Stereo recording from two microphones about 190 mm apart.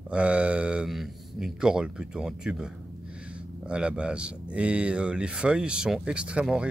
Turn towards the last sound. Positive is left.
turn(degrees=-5)  # may be behind; listen again after turning